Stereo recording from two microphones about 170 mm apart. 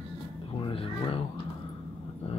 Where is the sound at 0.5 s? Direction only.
30° left (ahead or behind).